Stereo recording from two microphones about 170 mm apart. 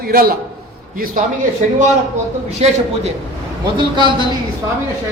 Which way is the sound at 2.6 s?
35° right (ahead or behind).